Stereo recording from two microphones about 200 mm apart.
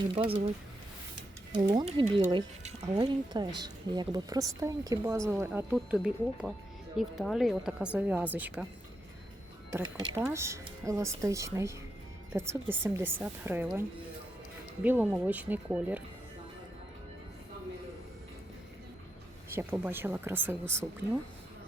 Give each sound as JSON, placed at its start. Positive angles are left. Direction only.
{"t": 0.2, "sound": "speech", "side_deg": -30}
{"t": 1.5, "sound": "speech", "side_deg": -25}
{"t": 10.2, "sound": "speech", "side_deg": -15}
{"t": 14.8, "sound": "speech", "side_deg": -10}
{"t": 19.5, "sound": "speech", "side_deg": -10}